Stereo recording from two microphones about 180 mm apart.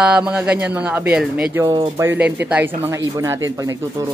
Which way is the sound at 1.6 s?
20° right (ahead or behind).